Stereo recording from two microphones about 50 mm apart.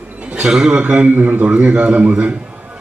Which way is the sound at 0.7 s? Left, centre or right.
Right.